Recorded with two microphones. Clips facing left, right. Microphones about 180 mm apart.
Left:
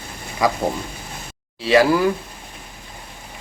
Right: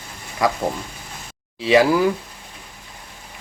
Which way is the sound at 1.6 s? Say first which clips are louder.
Even; 15° right (ahead or behind).